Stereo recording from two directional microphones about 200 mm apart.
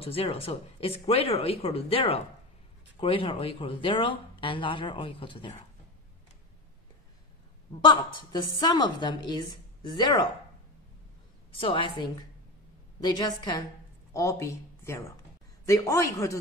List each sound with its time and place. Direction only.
0.0 s speech: 30° left (ahead or behind)
7.8 s speech: 25° left (ahead or behind)
11.5 s speech: 25° left (ahead or behind)